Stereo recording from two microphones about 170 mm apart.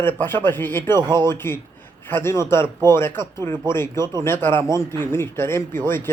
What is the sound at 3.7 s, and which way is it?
A man's voice, 15° left (ahead or behind).